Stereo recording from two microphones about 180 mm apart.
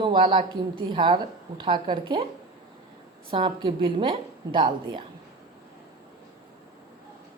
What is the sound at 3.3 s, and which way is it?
A woman's voice, 25° right (ahead or behind).